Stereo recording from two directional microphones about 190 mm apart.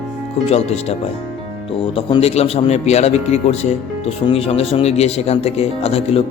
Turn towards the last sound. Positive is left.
turn(degrees=30)  # may be behind; listen again after turning